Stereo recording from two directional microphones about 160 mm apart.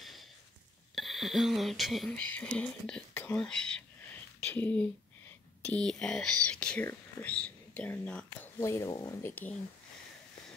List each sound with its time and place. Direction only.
0.9 s speech: centre (ahead or behind)